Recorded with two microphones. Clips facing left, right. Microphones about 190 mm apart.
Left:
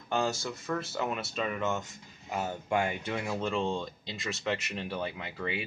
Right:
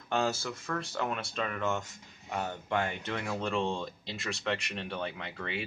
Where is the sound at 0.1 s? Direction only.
Centre (ahead or behind).